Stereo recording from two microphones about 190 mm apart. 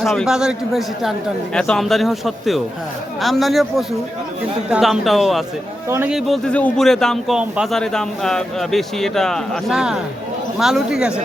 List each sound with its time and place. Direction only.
0.0 s speech: centre (ahead or behind)